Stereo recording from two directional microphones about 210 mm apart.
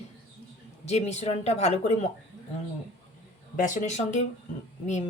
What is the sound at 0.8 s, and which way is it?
Speech, 30° left (ahead or behind).